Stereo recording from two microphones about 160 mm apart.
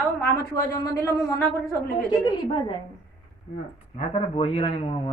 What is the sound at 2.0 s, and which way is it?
Speech, 25° left (ahead or behind).